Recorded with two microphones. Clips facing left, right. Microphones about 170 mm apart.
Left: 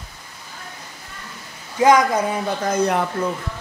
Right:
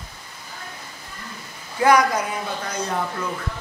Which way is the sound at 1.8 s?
20° left (ahead or behind).